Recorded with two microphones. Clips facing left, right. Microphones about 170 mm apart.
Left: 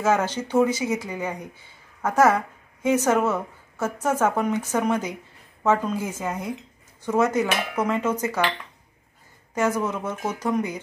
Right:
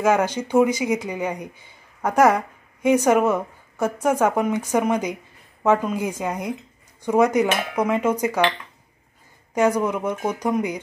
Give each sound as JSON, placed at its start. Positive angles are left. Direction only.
{"t": 0.0, "sound": "speech", "side_deg": -15}
{"t": 9.6, "sound": "speech", "side_deg": -15}